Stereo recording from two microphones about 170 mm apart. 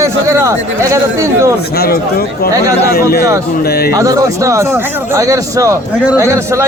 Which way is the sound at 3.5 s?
65° left (ahead or behind).